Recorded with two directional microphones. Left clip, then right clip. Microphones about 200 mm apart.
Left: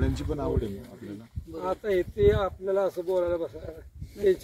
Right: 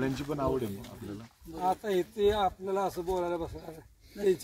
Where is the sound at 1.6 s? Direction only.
60° right (ahead or behind).